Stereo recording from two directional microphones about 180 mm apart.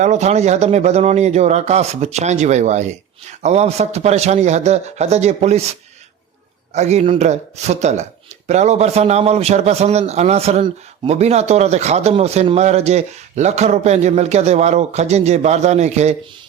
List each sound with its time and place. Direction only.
0.0 s a man's voice: 40° right (ahead or behind)
6.7 s a man's voice: 40° right (ahead or behind)